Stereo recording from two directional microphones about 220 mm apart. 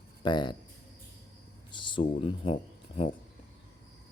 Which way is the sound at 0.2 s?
20° left (ahead or behind).